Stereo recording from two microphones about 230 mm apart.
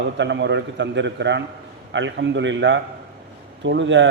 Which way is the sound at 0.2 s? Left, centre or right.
Right.